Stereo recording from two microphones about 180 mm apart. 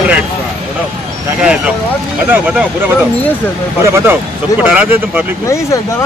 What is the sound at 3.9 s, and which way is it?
Speech, 10° right (ahead or behind).